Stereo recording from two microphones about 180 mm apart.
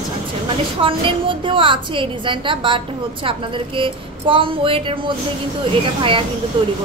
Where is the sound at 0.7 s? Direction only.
30° right (ahead or behind).